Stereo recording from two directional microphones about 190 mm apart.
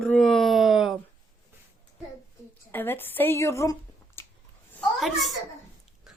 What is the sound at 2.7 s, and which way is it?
A woman's voice, 10° left (ahead or behind).